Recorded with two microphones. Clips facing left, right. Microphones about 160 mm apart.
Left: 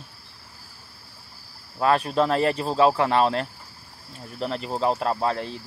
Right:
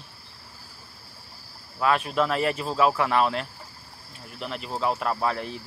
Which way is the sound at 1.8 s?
35° left (ahead or behind).